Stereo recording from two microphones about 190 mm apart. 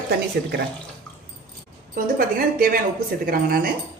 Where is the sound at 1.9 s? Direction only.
50° right (ahead or behind).